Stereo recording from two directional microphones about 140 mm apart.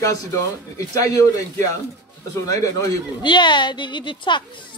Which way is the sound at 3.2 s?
35° left (ahead or behind).